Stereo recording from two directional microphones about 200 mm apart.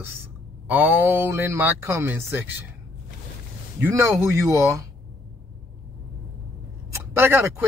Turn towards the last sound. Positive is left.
turn(degrees=-10)  # may be behind; listen again after turning